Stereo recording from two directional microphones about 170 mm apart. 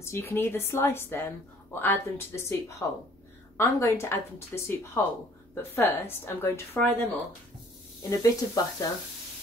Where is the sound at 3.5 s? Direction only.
15° left (ahead or behind).